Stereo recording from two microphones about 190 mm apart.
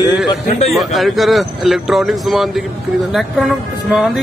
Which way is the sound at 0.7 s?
Centre (ahead or behind).